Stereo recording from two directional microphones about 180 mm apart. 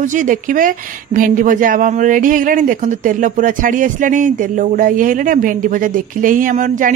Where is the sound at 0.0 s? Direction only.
45° right (ahead or behind).